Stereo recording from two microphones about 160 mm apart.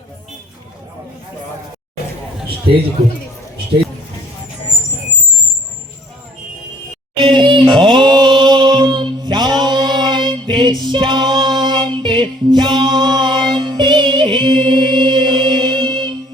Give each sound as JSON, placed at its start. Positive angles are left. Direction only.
{"t": 7.2, "sound": "music", "side_deg": -30}
{"t": 10.8, "sound": "female singing", "side_deg": -30}